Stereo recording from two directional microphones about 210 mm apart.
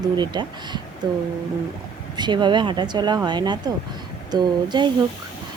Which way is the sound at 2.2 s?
20° right (ahead or behind).